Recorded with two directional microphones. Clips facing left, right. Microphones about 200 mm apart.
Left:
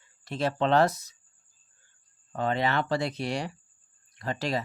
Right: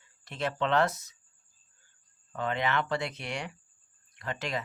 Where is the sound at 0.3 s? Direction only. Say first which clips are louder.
Left 4 dB; 35° left (ahead or behind).